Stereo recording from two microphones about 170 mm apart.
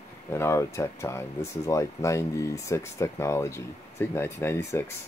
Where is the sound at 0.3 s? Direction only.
15° left (ahead or behind).